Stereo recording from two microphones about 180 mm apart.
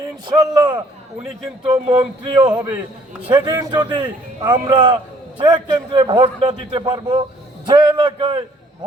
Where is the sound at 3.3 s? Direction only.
25° right (ahead or behind).